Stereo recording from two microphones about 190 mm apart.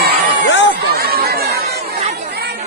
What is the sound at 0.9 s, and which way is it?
Chatter, 55° right (ahead or behind).